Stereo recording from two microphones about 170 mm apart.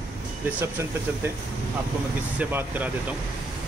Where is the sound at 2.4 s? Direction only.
10° right (ahead or behind).